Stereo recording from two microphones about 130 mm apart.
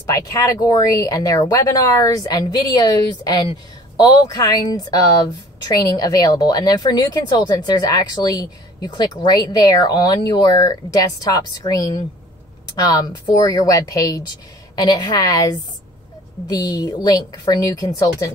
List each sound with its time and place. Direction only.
0.1 s a woman's voice: 25° left (ahead or behind)